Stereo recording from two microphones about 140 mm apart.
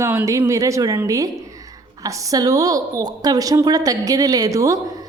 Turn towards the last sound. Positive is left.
turn(degrees=-25)  # may be behind; listen again after turning